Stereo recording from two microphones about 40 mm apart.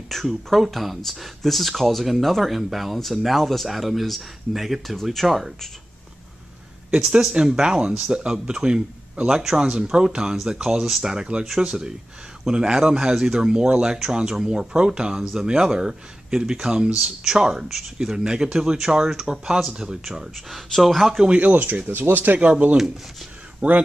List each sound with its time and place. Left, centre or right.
0.1 s speech: centre
7.0 s speech: centre
20.7 s speech: centre
21.4 s speech: right
21.9 s speech: right
22.4 s speech: right